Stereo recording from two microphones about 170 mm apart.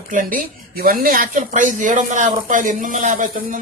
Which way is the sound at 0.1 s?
50° right (ahead or behind).